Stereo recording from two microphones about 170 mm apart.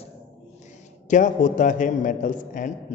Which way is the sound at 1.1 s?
50° left (ahead or behind).